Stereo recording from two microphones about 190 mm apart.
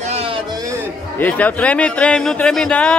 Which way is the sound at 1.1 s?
10° left (ahead or behind).